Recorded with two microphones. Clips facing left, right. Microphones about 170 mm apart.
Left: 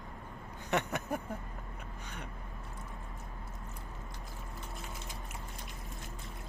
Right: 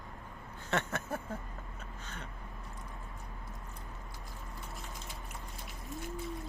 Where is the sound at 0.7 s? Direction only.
15° left (ahead or behind).